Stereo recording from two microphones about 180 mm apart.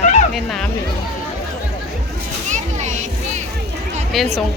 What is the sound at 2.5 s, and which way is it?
Children playing, 40° right (ahead or behind).